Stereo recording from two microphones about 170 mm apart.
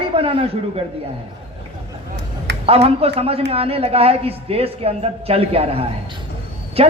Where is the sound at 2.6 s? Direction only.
35° right (ahead or behind).